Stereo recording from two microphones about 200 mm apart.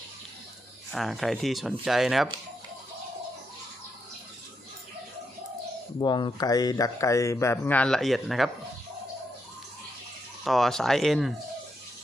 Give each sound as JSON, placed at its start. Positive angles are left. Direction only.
{"t": 0.9, "sound": "speech", "side_deg": 0}
{"t": 6.0, "sound": "speech", "side_deg": 20}
{"t": 10.4, "sound": "speech", "side_deg": 0}